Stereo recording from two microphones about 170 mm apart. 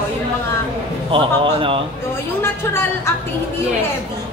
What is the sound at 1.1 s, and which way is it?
Speech, 30° right (ahead or behind).